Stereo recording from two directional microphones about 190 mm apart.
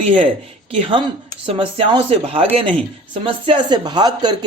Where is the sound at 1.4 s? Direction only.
30° right (ahead or behind).